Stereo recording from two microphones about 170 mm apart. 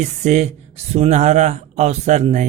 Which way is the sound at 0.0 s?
45° right (ahead or behind).